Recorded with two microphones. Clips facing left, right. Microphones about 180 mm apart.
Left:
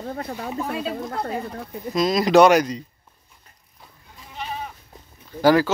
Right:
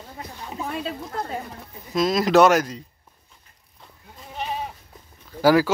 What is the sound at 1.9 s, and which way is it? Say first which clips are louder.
Speech: left 1 dB; centre (ahead or behind).